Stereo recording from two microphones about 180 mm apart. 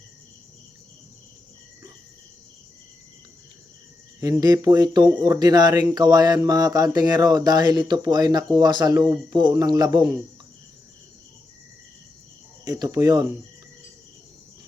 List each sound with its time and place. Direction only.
4.2 s speech: 20° right (ahead or behind)
12.6 s speech: 20° right (ahead or behind)